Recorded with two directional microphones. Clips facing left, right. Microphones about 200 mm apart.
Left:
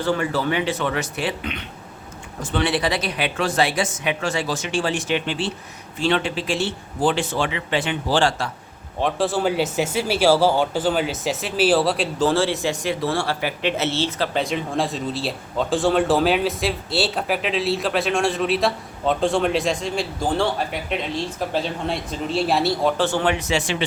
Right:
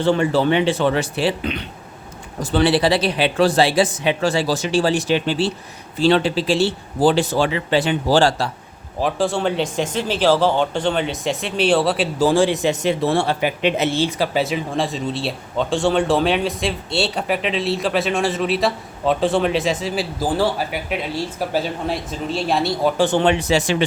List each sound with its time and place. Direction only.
0.0 s a man's voice: 25° right (ahead or behind)
9.0 s speech: centre (ahead or behind)
12.3 s speech: 15° right (ahead or behind); by 22.9 s centre (ahead or behind)
23.0 s a man's voice: 20° right (ahead or behind); by 23.7 s 40° right (ahead or behind)